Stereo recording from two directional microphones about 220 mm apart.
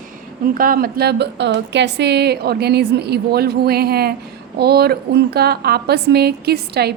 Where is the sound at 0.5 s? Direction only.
40° right (ahead or behind).